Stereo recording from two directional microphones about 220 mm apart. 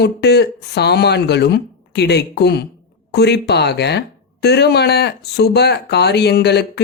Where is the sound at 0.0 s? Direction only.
50° left (ahead or behind).